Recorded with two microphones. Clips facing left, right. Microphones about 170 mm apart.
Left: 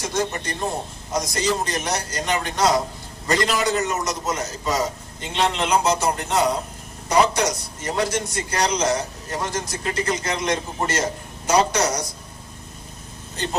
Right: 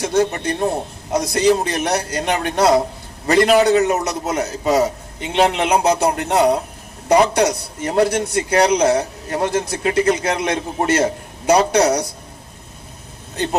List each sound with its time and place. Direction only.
0.0 s a man's voice: 60° right (ahead or behind)